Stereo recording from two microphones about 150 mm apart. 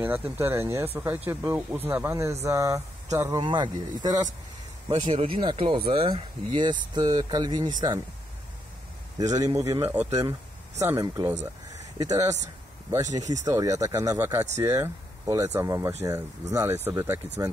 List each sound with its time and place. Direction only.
0.0 s speech: 15° right (ahead or behind)
9.2 s speech: 25° right (ahead or behind)
13.2 s speech: 55° right (ahead or behind)
13.5 s speech: 20° right (ahead or behind)